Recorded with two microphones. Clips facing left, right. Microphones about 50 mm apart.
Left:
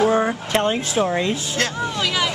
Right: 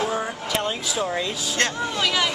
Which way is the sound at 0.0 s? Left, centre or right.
Left.